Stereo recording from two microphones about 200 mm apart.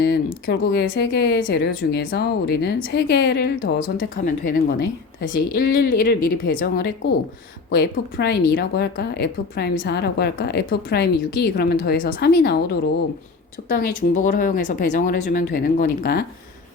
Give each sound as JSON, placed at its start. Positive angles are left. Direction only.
{"t": 0.0, "sound": "a woman's voice", "side_deg": 55}
{"t": 13.6, "sound": "a woman's voice", "side_deg": 40}